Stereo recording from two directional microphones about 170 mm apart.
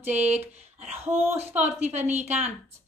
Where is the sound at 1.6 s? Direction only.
40° right (ahead or behind).